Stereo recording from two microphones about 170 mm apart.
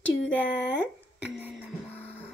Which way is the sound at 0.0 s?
90° left.